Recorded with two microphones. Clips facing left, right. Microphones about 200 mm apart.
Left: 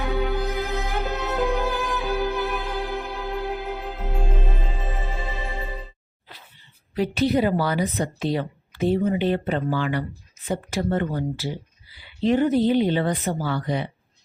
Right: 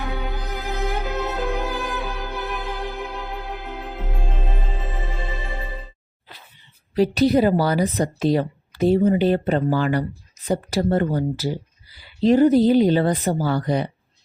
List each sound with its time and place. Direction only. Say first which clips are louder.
0.0 s music: left 5 dB; centre (ahead or behind)
6.9 s a woman's voice: right 4 dB; 35° right (ahead or behind)